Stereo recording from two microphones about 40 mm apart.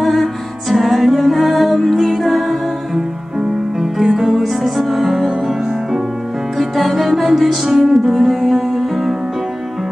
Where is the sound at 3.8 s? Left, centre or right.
Centre.